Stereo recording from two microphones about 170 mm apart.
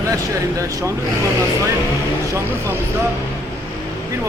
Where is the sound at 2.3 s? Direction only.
15° right (ahead or behind).